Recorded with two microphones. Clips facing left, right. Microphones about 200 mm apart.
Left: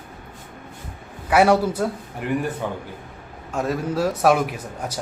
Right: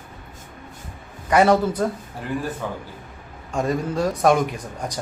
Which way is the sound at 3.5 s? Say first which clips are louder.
Right 1 dB; 5° left (ahead or behind).